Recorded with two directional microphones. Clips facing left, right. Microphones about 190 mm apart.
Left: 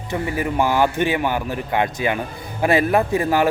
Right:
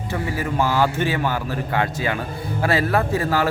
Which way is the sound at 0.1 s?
15° left (ahead or behind).